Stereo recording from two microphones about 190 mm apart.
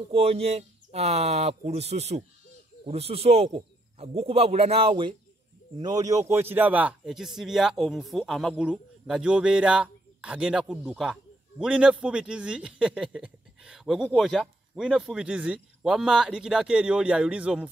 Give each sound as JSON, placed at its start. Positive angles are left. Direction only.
{"t": 0.1, "sound": "a man's voice", "side_deg": -30}